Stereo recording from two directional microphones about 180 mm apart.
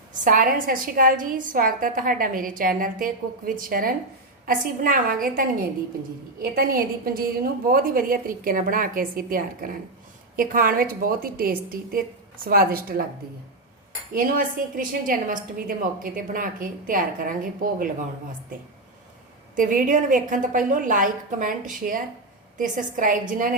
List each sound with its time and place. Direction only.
0.3 s a woman's voice: 50° right (ahead or behind)
14.1 s a woman's voice: 50° right (ahead or behind)
19.5 s a woman's voice: 50° right (ahead or behind)